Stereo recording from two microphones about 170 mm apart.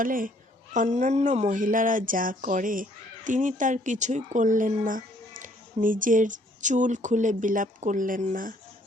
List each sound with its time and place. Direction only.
0.0 s speech: 55° right (ahead or behind)